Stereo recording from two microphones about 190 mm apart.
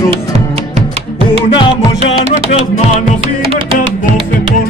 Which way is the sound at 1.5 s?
25° left (ahead or behind).